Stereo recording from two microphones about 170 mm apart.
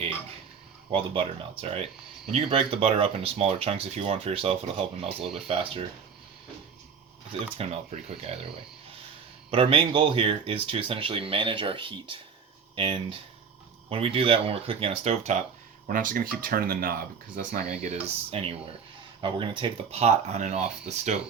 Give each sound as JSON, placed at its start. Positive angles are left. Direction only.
{"t": 0.9, "sound": "speech", "side_deg": -30}
{"t": 7.3, "sound": "speech", "side_deg": -35}
{"t": 15.9, "sound": "speech", "side_deg": -55}
{"t": 17.7, "sound": "speech", "side_deg": -40}